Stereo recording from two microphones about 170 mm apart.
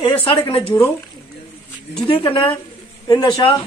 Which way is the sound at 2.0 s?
30° left (ahead or behind).